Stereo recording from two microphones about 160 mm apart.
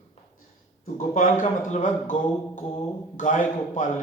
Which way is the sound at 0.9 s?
50° left (ahead or behind).